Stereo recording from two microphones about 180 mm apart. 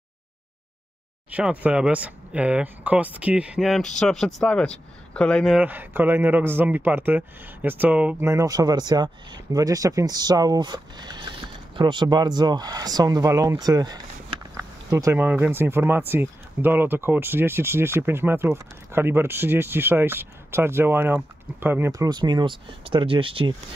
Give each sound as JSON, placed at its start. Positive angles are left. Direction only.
{"t": 1.3, "sound": "speech", "side_deg": -10}
{"t": 5.6, "sound": "speech", "side_deg": -10}